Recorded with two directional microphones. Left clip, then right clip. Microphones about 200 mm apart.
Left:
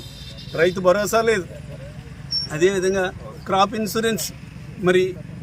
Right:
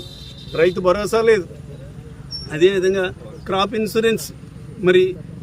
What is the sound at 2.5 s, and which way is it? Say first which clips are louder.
Speech: right 4 dB; 5° right (ahead or behind).